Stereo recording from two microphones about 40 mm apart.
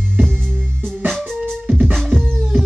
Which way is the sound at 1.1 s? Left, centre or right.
Centre.